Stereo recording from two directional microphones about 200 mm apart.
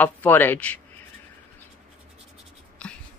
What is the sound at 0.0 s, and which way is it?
Speech, 10° left (ahead or behind).